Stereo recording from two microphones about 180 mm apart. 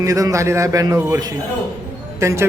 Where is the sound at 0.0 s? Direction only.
20° right (ahead or behind).